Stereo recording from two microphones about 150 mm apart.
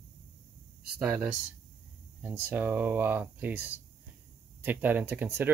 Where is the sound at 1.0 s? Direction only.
10° right (ahead or behind).